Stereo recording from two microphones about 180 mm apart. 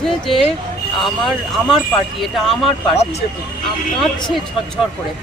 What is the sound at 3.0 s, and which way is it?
Speech, 35° left (ahead or behind).